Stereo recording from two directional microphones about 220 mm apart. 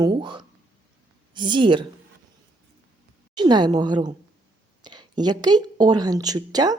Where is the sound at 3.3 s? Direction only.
20° right (ahead or behind).